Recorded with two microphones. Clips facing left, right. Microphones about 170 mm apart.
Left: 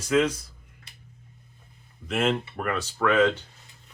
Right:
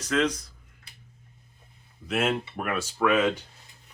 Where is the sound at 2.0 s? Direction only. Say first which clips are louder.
Left 1 dB; 5° right (ahead or behind).